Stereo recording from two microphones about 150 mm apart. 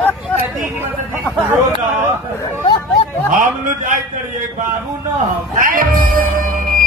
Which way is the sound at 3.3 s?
65° right (ahead or behind).